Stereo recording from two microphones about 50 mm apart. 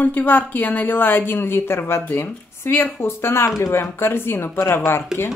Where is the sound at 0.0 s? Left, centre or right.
Left.